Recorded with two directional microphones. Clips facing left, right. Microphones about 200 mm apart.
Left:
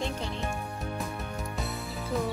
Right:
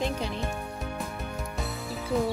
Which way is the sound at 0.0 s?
15° right (ahead or behind).